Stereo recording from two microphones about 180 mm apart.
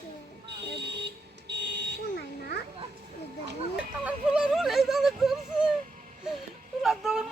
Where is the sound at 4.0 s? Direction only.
5° right (ahead or behind).